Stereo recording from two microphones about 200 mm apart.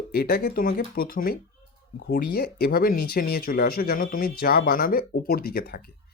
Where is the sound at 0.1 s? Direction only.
50° left (ahead or behind).